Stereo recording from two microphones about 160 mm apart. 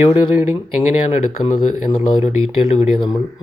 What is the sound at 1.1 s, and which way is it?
Speech, 45° left (ahead or behind).